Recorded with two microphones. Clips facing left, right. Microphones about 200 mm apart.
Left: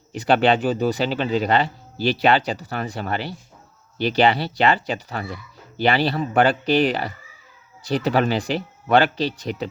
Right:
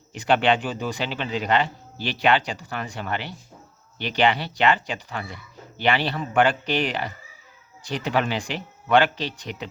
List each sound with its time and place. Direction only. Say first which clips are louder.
0.1 s speech: left 3 dB; 40° left (ahead or behind)